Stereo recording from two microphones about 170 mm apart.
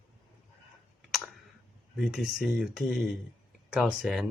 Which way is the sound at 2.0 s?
Centre (ahead or behind).